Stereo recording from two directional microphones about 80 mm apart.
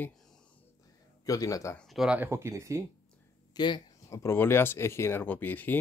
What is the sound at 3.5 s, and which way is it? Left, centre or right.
Speech, left.